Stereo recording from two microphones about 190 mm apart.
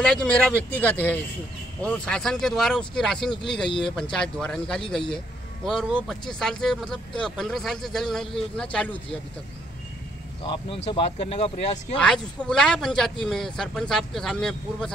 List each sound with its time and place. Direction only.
0.0 s speech: 5° left (ahead or behind)
10.9 s speech: 30° left (ahead or behind)
12.0 s speech: 5° left (ahead or behind)